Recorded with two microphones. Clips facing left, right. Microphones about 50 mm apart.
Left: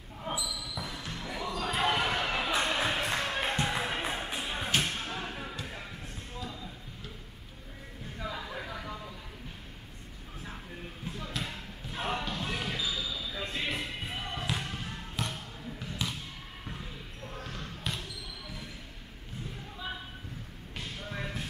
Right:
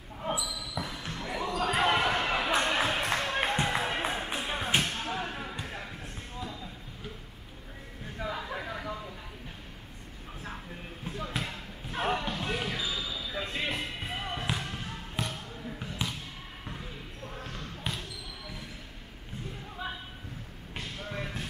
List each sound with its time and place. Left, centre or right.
0.3 s basketball bounce: right
0.6 s basketball bounce: centre
2.6 s a sound: centre
3.3 s a sound: right
4.5 s music: centre
8.2 s a sound: centre
11.1 s basketball bounce: centre
13.1 s a sound: centre
13.7 s music: centre
14.6 s bouncing: centre
15.2 s basketball bounce: centre
17.9 s basketball bounce: right
21.0 s basketball bounce: centre